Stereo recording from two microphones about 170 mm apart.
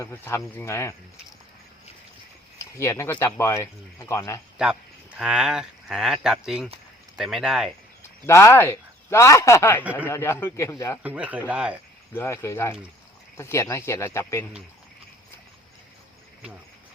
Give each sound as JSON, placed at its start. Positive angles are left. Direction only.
{"t": 0.0, "sound": "speech", "side_deg": 15}
{"t": 2.6, "sound": "speech", "side_deg": 15}
{"t": 4.5, "sound": "speech", "side_deg": -5}
{"t": 8.3, "sound": "speech", "side_deg": 15}
{"t": 11.0, "sound": "speech", "side_deg": -10}
{"t": 12.1, "sound": "speech", "side_deg": 15}